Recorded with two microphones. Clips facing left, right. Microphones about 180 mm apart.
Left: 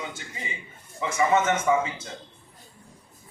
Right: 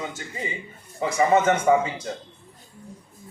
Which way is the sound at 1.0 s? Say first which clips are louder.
Right 3 dB; 35° right (ahead or behind).